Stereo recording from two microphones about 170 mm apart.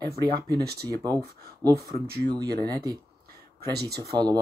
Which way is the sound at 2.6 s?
25° right (ahead or behind).